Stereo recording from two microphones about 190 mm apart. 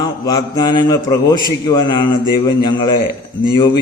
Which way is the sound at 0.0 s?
20° left (ahead or behind).